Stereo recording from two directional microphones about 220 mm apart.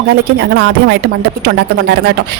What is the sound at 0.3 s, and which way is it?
Speech, 50° right (ahead or behind).